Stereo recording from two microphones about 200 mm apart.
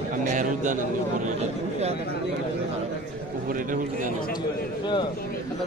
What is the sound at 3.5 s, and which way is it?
Speech, 45° right (ahead or behind).